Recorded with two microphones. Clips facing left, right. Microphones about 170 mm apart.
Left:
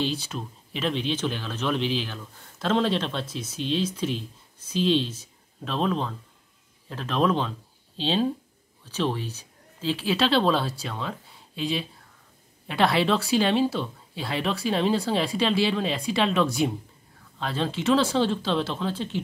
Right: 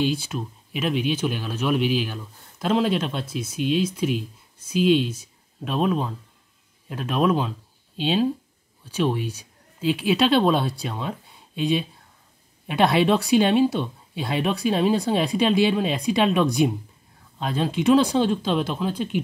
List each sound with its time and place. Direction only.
0.0 s speech: 10° right (ahead or behind)